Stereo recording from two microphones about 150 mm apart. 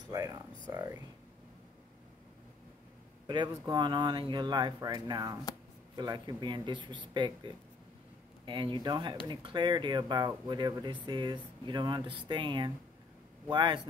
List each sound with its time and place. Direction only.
0.1 s a sound: 25° right (ahead or behind)
0.7 s speech: 20° right (ahead or behind)
3.3 s speech: 30° right (ahead or behind)